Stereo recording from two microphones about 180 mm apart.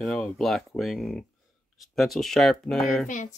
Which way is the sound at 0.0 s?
Centre (ahead or behind).